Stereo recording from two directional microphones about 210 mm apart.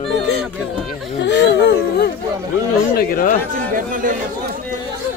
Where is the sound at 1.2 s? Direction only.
55° left (ahead or behind).